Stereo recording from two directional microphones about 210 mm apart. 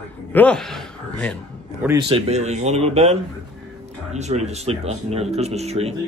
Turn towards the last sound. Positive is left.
turn(degrees=-30)  # may be behind; listen again after turning